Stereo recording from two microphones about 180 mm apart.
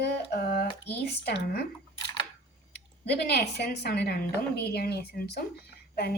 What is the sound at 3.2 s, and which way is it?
Speech, 65° left (ahead or behind).